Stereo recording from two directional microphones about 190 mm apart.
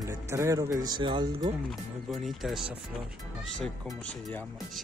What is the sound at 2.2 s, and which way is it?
Speech, centre (ahead or behind).